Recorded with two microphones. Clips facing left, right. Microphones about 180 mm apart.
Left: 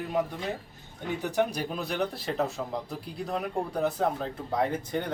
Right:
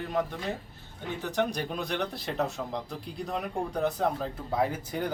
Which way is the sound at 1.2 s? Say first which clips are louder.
Left 1 dB; 10° left (ahead or behind).